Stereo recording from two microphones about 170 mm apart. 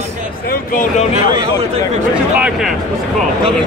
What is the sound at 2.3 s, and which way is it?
Speech, 5° right (ahead or behind).